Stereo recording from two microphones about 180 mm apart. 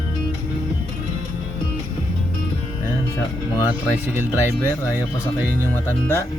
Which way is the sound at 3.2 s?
15° left (ahead or behind).